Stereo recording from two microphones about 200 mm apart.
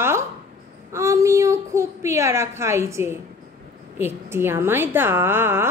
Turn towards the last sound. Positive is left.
turn(degrees=-10)  # may be behind; listen again after turning